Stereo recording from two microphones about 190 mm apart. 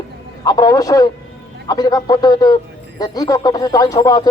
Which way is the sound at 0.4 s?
20° left (ahead or behind).